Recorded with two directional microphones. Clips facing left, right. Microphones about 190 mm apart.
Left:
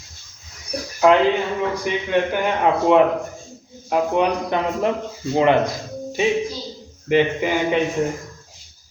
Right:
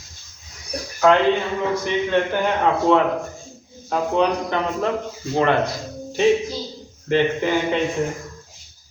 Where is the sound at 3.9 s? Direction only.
15° left (ahead or behind).